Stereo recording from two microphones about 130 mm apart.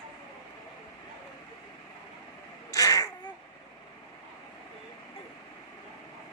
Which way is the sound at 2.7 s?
25° left (ahead or behind).